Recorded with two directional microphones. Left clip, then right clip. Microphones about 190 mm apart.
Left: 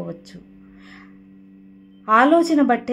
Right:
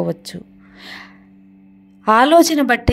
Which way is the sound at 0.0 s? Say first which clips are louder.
Right 10 dB; 35° right (ahead or behind).